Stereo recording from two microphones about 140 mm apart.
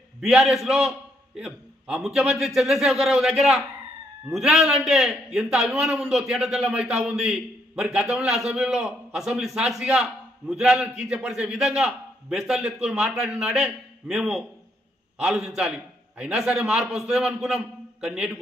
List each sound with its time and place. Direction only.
0.2 s a man's voice: centre (ahead or behind)
16.2 s a man's voice: 5° right (ahead or behind)